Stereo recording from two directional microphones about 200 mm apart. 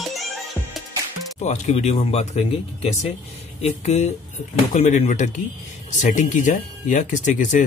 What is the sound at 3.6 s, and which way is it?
Speech, 35° left (ahead or behind).